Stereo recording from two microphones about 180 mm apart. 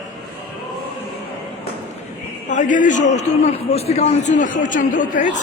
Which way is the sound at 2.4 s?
45° left (ahead or behind).